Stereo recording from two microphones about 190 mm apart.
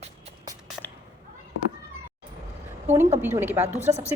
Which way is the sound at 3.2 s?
10° right (ahead or behind).